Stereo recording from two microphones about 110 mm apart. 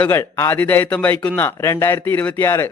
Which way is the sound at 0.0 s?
20° left (ahead or behind).